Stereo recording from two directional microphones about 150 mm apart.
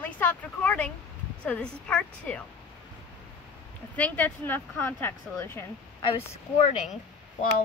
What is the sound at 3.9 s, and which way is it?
Speech, 10° left (ahead or behind).